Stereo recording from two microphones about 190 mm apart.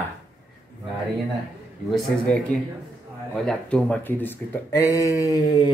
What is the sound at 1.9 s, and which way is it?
A man's voice, centre (ahead or behind).